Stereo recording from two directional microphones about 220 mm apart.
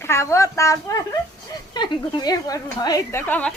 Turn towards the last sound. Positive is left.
turn(degrees=5)  # may be behind; listen again after turning